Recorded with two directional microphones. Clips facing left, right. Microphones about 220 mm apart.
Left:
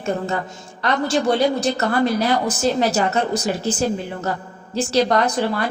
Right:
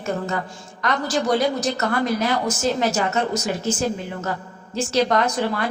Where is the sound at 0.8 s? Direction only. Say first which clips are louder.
Left 3 dB; 30° left (ahead or behind).